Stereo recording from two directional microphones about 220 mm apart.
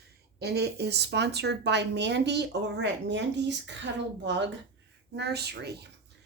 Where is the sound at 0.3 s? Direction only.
45° right (ahead or behind).